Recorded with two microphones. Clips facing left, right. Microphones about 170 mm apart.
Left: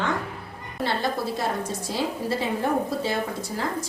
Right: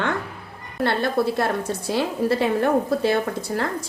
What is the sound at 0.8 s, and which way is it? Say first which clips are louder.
A woman's voice: right 5 dB; 60° right (ahead or behind).